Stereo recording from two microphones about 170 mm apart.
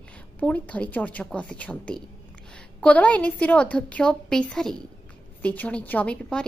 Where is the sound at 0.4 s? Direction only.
10° left (ahead or behind).